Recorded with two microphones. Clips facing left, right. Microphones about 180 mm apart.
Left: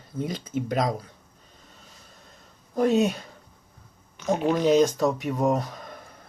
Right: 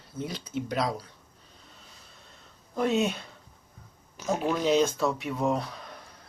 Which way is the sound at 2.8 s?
40° left (ahead or behind).